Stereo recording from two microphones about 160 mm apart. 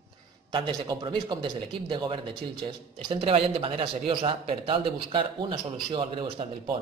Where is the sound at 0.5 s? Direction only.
30° right (ahead or behind).